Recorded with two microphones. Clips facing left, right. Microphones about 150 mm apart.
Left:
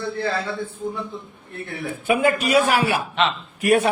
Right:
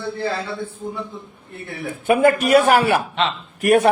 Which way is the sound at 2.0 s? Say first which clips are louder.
Right 4 dB; 50° right (ahead or behind).